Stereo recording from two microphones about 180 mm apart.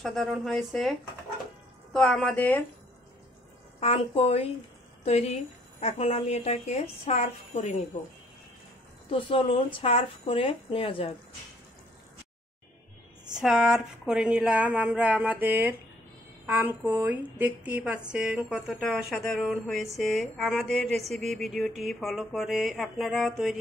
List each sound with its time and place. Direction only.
0.0 s a woman's voice: centre (ahead or behind)
3.8 s a woman's voice: 35° left (ahead or behind)
9.8 s a woman's voice: 30° left (ahead or behind)
13.3 s a woman's voice: 5° right (ahead or behind)